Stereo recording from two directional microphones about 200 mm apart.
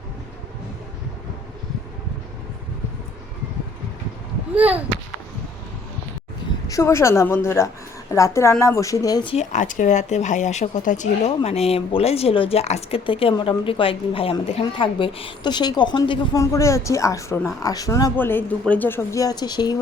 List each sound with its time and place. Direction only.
4.5 s speech: 10° right (ahead or behind)
6.7 s a woman's voice: 15° left (ahead or behind)